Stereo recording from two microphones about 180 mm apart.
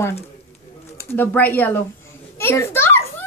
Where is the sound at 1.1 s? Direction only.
10° left (ahead or behind).